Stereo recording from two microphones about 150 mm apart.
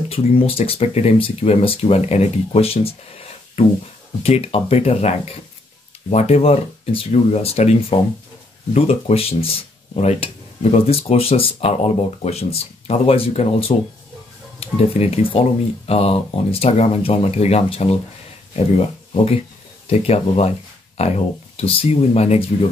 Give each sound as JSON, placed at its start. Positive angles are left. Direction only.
{"t": 0.1, "sound": "speech", "side_deg": 40}
{"t": 19.9, "sound": "speech", "side_deg": 40}